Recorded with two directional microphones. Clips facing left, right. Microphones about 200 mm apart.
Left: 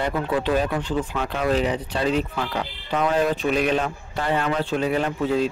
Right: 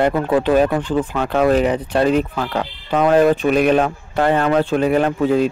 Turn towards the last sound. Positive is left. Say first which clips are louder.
# right 6 dB
turn(degrees=-55)  # may be behind; listen again after turning